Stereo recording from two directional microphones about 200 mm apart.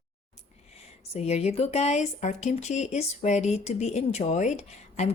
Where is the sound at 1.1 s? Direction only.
30° left (ahead or behind).